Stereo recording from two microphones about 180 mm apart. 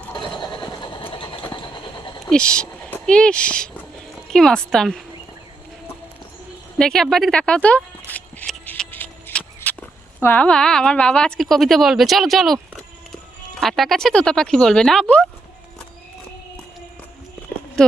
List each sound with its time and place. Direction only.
0.2 s train: 25° left (ahead or behind)
2.3 s a woman's voice: 5° left (ahead or behind)
6.7 s a woman's voice: 5° left (ahead or behind)
8.1 s a sound: 10° left (ahead or behind)
10.2 s a woman's voice: 10° left (ahead or behind)
17.8 s speech: 5° left (ahead or behind)